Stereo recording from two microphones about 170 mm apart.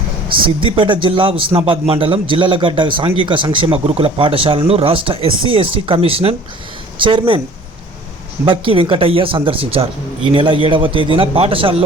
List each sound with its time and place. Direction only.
0.6 s a man's voice: 30° right (ahead or behind)
8.4 s a man's voice: 30° right (ahead or behind)